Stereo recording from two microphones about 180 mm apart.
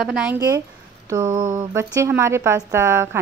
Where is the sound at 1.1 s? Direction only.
20° right (ahead or behind).